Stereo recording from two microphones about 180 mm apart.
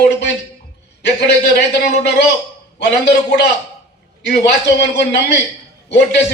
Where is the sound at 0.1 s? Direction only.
75° left (ahead or behind).